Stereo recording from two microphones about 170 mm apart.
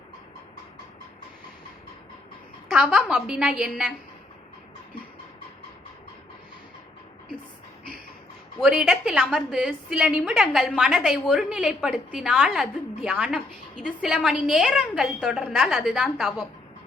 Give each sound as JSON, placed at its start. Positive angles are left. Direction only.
{"t": 2.6, "sound": "a woman's voice", "side_deg": 0}
{"t": 8.5, "sound": "a woman's voice", "side_deg": 0}